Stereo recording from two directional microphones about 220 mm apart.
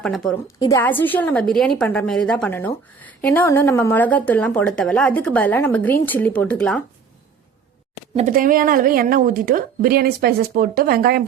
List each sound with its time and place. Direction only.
0.0 s a woman's voice: centre (ahead or behind)
8.1 s speech: 35° right (ahead or behind)